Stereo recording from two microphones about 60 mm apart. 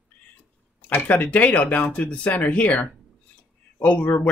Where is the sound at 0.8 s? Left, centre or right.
Left.